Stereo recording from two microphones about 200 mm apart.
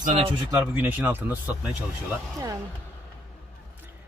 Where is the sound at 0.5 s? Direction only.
10° right (ahead or behind).